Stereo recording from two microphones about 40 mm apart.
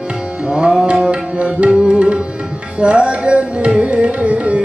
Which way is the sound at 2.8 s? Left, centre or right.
Right.